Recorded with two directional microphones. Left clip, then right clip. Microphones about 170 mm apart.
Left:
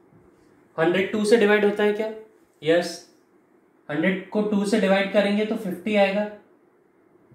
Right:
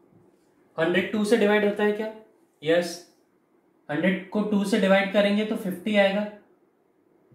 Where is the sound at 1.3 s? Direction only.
25° left (ahead or behind).